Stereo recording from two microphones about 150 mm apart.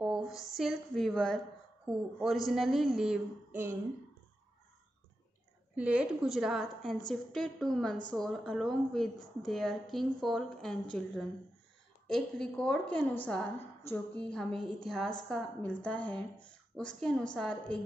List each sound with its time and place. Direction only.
0.0 s a woman's voice: 5° right (ahead or behind)
5.8 s a woman's voice: 10° right (ahead or behind)